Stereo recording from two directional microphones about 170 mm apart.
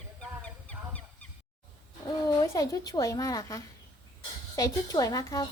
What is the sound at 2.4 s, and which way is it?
Speech, 20° left (ahead or behind).